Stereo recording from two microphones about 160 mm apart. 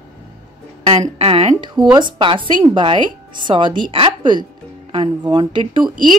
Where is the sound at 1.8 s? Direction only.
25° right (ahead or behind).